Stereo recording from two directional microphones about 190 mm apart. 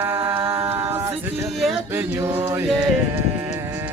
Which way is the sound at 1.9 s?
15° right (ahead or behind).